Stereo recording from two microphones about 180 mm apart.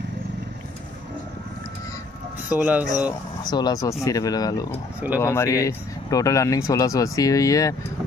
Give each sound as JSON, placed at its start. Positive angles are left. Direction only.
{"t": 2.5, "sound": "speech", "side_deg": -10}
{"t": 3.4, "sound": "speech", "side_deg": 20}